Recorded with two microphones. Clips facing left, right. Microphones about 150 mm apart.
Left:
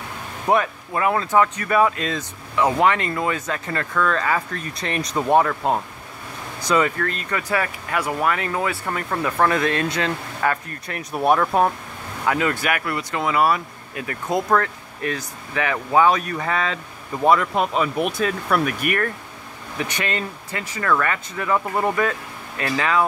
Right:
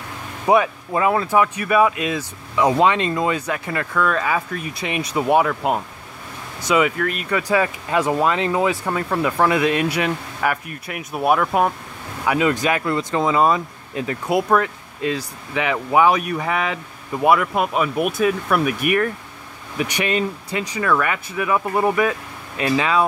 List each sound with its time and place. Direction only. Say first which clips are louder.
0.5 s speech: right 3 dB; 10° right (ahead or behind)
12.3 s speech: right 3 dB; 15° right (ahead or behind)
14.2 s speech: right 2 dB; 10° right (ahead or behind)